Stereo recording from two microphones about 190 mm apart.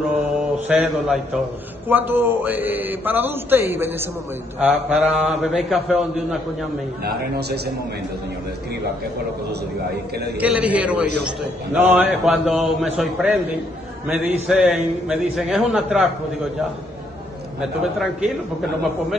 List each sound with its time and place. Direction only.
0.7 s a man's voice: 5° right (ahead or behind)
7.0 s a man's voice: 60° right (ahead or behind)
10.3 s a man's voice: 5° right (ahead or behind)
17.6 s a man's voice: 5° right (ahead or behind)